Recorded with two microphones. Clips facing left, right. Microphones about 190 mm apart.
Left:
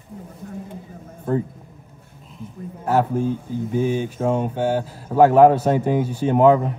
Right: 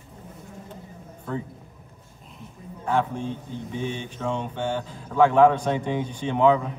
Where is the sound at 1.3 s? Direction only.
45° left (ahead or behind).